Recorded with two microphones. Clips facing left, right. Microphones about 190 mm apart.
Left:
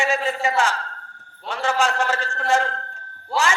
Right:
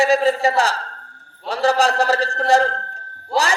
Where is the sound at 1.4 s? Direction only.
35° right (ahead or behind).